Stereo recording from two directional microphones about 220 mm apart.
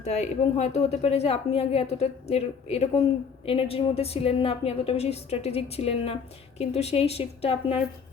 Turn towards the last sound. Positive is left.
turn(degrees=25)  # may be behind; listen again after turning